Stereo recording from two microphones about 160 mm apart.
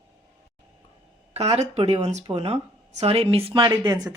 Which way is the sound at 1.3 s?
40° right (ahead or behind).